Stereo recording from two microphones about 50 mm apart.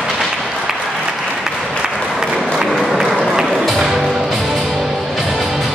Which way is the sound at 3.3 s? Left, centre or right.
Centre.